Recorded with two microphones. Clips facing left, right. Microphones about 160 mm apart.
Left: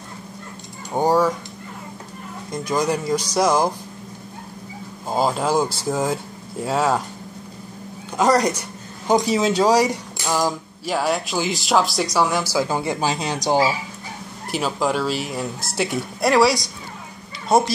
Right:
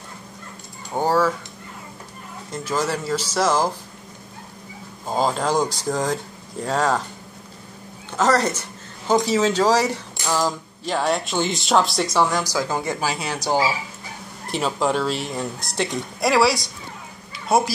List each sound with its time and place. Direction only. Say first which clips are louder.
0.9 s speech: left 2 dB; 15° left (ahead or behind)
2.5 s speech: left 3 dB; 15° left (ahead or behind)
5.0 s speech: left 1 dB; 10° left (ahead or behind)
8.2 s speech: left 2 dB; 15° left (ahead or behind)
14.5 s speech: even; centre (ahead or behind)